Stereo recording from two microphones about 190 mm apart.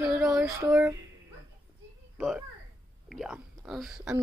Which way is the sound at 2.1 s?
5° right (ahead or behind).